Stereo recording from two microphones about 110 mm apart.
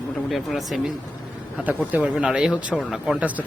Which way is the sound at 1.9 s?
10° right (ahead or behind).